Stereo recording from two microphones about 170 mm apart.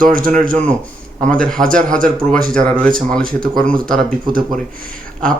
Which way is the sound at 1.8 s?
50° right (ahead or behind).